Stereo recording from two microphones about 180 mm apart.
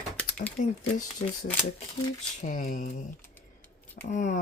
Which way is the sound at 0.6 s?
45° left (ahead or behind).